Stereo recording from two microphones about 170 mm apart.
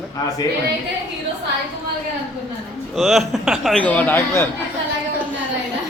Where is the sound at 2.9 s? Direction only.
Centre (ahead or behind).